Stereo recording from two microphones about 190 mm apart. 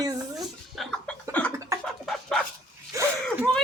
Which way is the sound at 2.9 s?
15° right (ahead or behind).